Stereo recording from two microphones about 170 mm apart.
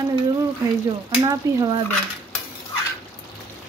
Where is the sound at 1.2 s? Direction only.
20° right (ahead or behind).